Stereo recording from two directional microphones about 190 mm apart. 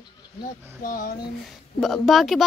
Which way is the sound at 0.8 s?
45° left (ahead or behind).